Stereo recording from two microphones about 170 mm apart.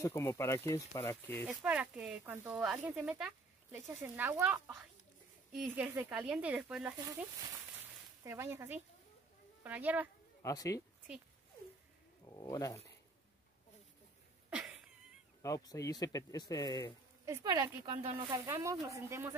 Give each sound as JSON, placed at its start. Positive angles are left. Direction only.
{"t": 0.0, "sound": "speech", "side_deg": 15}
{"t": 1.5, "sound": "speech", "side_deg": -5}
{"t": 5.8, "sound": "speech", "side_deg": -10}
{"t": 10.4, "sound": "speech", "side_deg": 20}
{"t": 12.4, "sound": "speech", "side_deg": 20}
{"t": 15.4, "sound": "speech", "side_deg": 20}
{"t": 17.3, "sound": "speech", "side_deg": -20}